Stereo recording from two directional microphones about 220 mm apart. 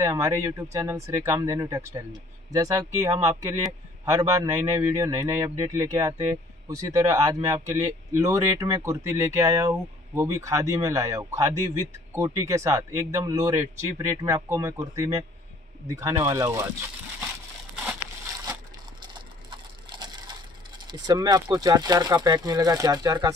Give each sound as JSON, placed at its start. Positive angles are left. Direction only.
{"t": 0.0, "sound": "speech", "side_deg": -15}
{"t": 18.4, "sound": "crushing", "side_deg": -15}